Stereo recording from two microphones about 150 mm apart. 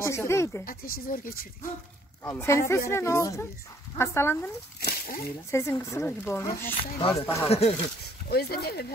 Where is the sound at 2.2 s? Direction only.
20° left (ahead or behind).